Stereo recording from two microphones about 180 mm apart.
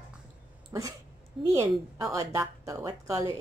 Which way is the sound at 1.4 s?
15° right (ahead or behind).